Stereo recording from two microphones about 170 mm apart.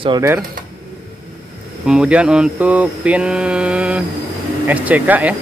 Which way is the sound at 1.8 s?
5° right (ahead or behind).